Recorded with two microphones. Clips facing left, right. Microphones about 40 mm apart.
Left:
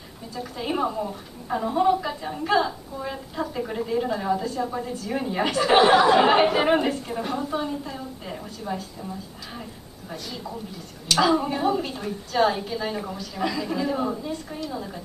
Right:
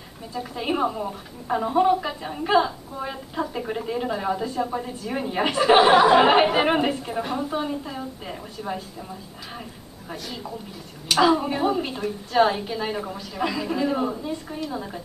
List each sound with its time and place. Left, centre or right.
0.3 s a woman's voice: centre
11.1 s a woman's voice: centre